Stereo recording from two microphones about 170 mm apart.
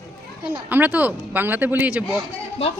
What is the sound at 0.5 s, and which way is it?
Speech, 10° right (ahead or behind).